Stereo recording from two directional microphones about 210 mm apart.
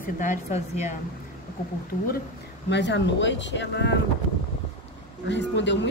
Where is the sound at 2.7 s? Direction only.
55° left (ahead or behind).